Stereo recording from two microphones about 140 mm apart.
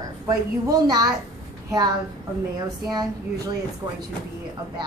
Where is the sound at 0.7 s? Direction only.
25° right (ahead or behind).